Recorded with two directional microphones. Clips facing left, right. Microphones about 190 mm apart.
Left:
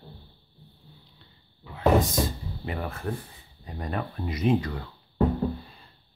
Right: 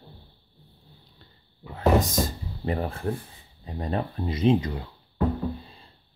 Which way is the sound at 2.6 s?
35° right (ahead or behind).